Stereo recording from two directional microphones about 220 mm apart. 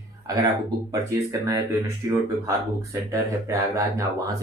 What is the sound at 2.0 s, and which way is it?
Speech, 15° right (ahead or behind).